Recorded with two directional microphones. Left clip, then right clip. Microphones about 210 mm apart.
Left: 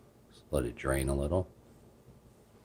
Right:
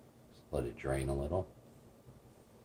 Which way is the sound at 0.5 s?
45° left (ahead or behind).